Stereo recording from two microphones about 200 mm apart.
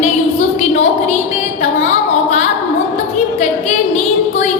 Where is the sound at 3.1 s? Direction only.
35° left (ahead or behind).